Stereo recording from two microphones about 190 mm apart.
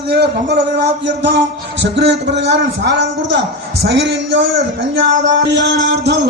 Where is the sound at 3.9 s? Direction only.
70° right (ahead or behind).